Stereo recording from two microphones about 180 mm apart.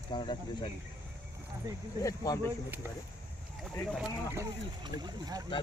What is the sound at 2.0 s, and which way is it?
Speech, 20° left (ahead or behind).